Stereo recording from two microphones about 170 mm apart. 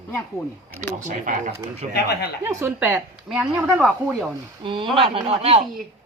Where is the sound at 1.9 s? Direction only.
70° left (ahead or behind).